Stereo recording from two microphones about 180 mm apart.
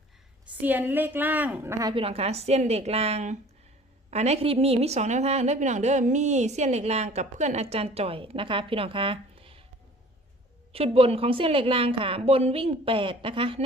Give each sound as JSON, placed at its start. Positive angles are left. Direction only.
{"t": 0.6, "sound": "a woman's voice", "side_deg": -10}
{"t": 1.9, "sound": "a woman's voice", "side_deg": -30}
{"t": 10.7, "sound": "a woman's voice", "side_deg": -30}